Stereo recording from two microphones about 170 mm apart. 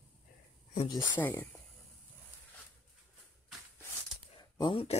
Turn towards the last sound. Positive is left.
turn(degrees=30)  # may be behind; listen again after turning